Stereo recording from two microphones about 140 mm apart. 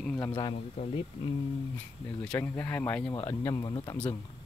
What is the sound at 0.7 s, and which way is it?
Speech, 50° left (ahead or behind).